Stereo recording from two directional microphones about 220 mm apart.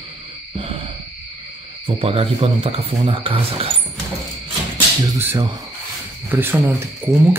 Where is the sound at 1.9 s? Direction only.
25° right (ahead or behind).